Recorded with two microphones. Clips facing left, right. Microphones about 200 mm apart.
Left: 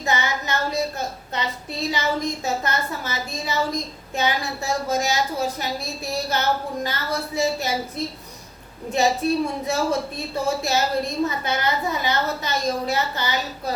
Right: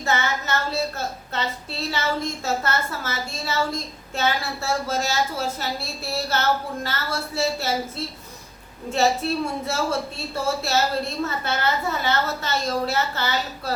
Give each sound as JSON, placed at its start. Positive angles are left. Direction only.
{"t": 0.0, "sound": "a woman's voice", "side_deg": 15}